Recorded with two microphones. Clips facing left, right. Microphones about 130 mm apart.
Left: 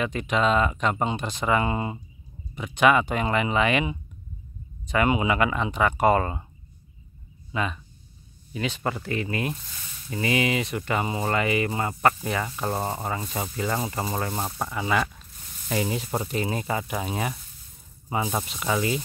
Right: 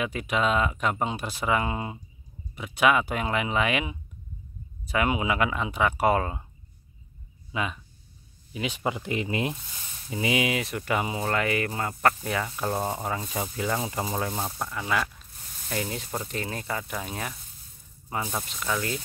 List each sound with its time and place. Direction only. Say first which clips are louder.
0.0 s speech: left 2 dB; 5° right (ahead or behind)
7.5 s speech: left 2 dB; 5° right (ahead or behind)
10.0 s speech: left 1 dB; 5° right (ahead or behind)